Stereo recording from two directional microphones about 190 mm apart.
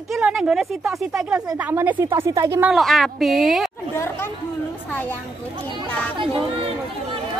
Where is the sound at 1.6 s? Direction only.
10° right (ahead or behind).